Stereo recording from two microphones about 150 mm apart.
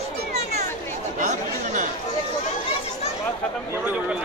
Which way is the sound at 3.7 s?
10° right (ahead or behind).